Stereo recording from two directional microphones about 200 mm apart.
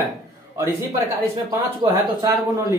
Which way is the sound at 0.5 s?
15° right (ahead or behind).